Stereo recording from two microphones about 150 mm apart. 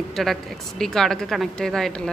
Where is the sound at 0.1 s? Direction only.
Centre (ahead or behind).